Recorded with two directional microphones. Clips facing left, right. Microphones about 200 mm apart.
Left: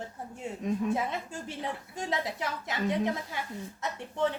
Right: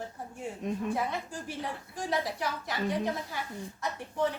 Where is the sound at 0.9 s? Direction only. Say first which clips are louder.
Left 1 dB; 20° left (ahead or behind).